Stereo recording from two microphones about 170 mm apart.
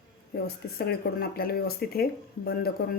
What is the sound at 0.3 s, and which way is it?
Speech, 70° left (ahead or behind).